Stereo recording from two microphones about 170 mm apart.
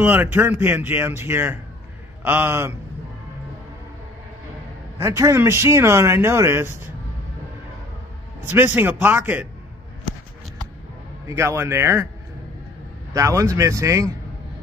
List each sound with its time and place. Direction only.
0.0 s speech: 10° right (ahead or behind)
5.0 s speech: 15° right (ahead or behind)
8.5 s speech: 10° right (ahead or behind)
11.2 s speech: 15° right (ahead or behind)
13.1 s speech: 20° right (ahead or behind)